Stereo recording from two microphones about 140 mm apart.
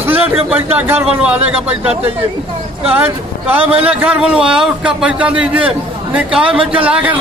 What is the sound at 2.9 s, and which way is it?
A man's voice, 15° right (ahead or behind).